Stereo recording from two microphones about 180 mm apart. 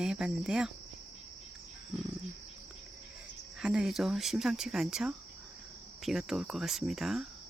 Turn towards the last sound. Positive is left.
turn(degrees=0)  # may be behind; listen again after turning